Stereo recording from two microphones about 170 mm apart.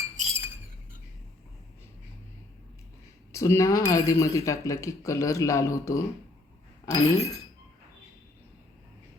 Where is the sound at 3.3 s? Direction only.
15° left (ahead or behind).